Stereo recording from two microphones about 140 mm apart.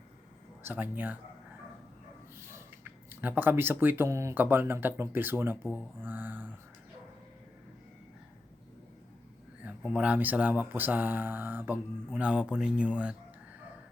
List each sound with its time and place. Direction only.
0.6 s speech: 15° right (ahead or behind)
2.4 s a sound: 20° right (ahead or behind)
3.1 s speech: 15° right (ahead or behind)
9.6 s speech: 10° right (ahead or behind)